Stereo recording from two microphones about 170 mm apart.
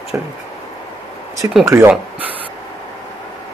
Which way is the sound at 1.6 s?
15° right (ahead or behind).